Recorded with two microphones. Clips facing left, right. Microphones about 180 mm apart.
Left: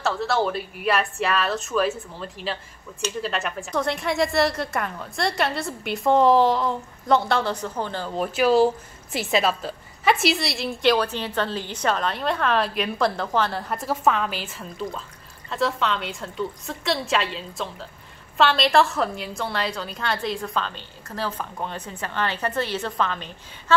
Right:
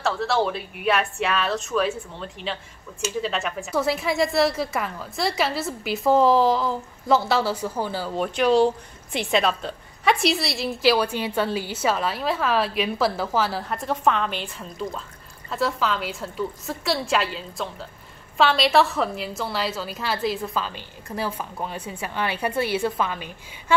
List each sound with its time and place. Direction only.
0.0 s a woman's voice: centre (ahead or behind)